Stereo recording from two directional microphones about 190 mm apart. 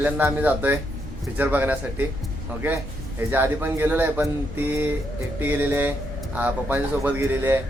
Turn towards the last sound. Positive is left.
turn(degrees=-10)  # may be behind; listen again after turning